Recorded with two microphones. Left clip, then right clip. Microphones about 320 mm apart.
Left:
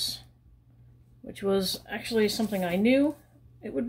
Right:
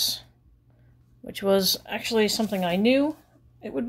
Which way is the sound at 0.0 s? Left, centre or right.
Right.